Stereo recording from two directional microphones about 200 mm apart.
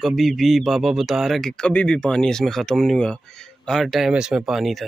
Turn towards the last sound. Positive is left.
turn(degrees=0)  # may be behind; listen again after turning